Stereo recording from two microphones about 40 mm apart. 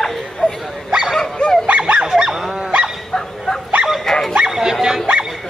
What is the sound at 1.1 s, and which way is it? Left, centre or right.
Dog, centre.